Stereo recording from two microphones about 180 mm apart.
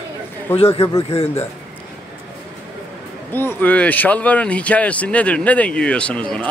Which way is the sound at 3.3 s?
10° left (ahead or behind).